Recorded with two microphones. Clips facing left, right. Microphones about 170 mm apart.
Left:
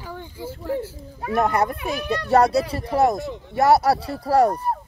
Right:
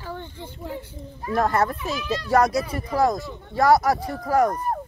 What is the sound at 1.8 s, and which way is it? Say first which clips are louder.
Speech: left 2 dB; 60° left (ahead or behind).